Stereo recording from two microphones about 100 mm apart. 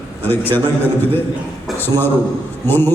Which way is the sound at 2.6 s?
20° left (ahead or behind).